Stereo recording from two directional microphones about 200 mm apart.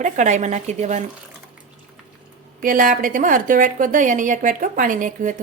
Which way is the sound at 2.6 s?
45° right (ahead or behind).